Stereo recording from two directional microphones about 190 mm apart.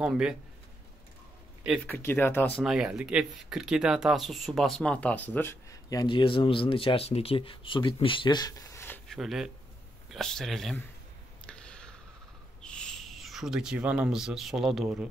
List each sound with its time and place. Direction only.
0.0 s speech: 5° right (ahead or behind)
1.9 s speech: 10° left (ahead or behind)
2.6 s speech: 5° right (ahead or behind)
11.4 s a sound: 5° left (ahead or behind)
12.6 s speech: 5° left (ahead or behind)